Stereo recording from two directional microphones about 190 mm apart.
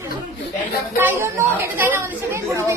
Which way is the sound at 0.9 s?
10° right (ahead or behind).